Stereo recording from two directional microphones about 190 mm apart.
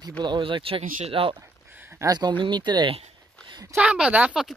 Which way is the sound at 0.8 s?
45° right (ahead or behind).